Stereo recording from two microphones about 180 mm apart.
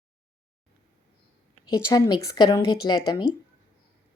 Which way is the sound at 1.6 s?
20° left (ahead or behind).